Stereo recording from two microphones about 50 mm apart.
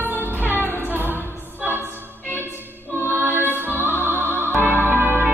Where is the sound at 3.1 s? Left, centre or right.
Right.